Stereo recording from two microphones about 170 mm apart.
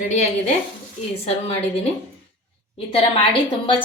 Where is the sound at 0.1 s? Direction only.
45° left (ahead or behind).